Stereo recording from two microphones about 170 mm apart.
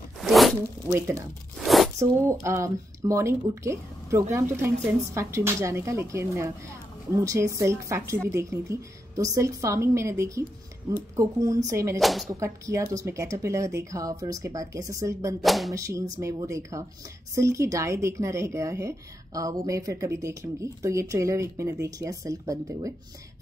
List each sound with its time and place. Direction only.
0.2 s zipper: centre (ahead or behind)
0.8 s speech: 15° right (ahead or behind)
1.6 s squish: centre (ahead or behind)
2.0 s speech: 15° right (ahead or behind)
12.0 s speech: centre (ahead or behind)
12.3 s speech: 20° right (ahead or behind)
15.4 s speech: centre (ahead or behind)
15.7 s speech: 20° right (ahead or behind)